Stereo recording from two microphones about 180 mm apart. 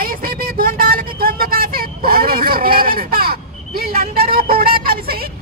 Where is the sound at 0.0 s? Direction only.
55° right (ahead or behind).